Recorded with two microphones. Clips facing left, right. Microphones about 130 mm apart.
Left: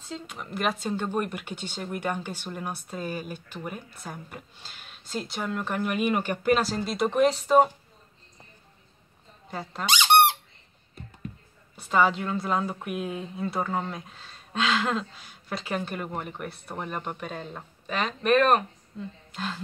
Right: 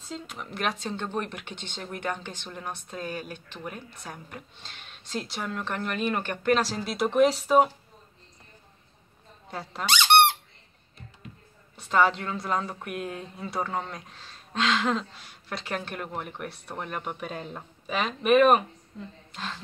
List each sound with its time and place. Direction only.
0.1 s a woman's voice: centre (ahead or behind)
9.5 s a woman's voice: centre (ahead or behind)
9.8 s speech: 15° left (ahead or behind)
11.7 s a woman's voice: centre (ahead or behind)